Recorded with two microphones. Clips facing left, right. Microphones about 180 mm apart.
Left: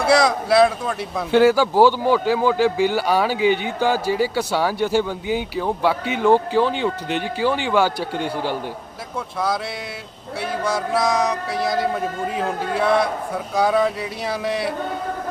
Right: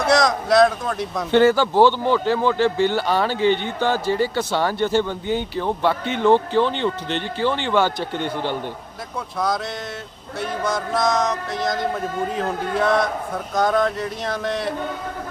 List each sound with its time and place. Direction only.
0.0 s speech: 5° left (ahead or behind)
10.7 s speech: 10° left (ahead or behind)